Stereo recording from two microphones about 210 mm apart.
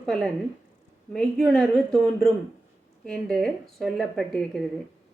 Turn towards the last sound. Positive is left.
turn(degrees=0)  # may be behind; listen again after turning